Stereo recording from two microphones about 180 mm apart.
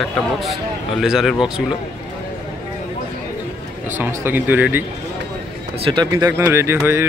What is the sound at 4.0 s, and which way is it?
Speech, 10° right (ahead or behind).